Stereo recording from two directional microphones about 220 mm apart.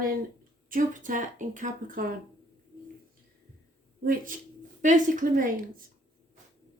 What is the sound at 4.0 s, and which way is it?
Speech, 40° right (ahead or behind).